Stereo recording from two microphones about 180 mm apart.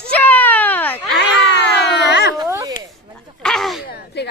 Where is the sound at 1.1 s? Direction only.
75° left (ahead or behind).